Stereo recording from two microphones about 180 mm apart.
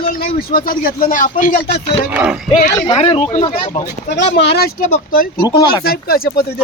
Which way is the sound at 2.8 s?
30° left (ahead or behind).